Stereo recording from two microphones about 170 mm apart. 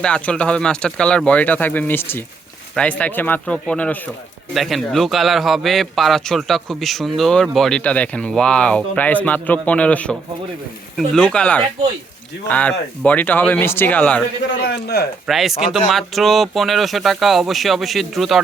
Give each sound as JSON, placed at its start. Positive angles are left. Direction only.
{"t": 0.0, "sound": "a man's voice", "side_deg": 5}
{"t": 14.7, "sound": "speech", "side_deg": 70}
{"t": 15.3, "sound": "a man's voice", "side_deg": 0}